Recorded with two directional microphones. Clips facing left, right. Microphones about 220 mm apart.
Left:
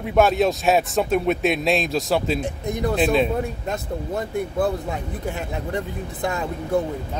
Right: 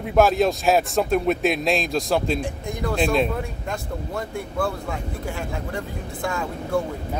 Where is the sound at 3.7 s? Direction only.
20° left (ahead or behind).